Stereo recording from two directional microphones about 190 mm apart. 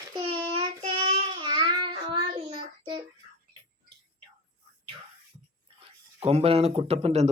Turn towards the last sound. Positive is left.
turn(degrees=-35)  # may be behind; listen again after turning